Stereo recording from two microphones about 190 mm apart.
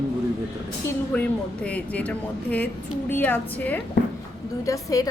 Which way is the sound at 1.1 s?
5° left (ahead or behind).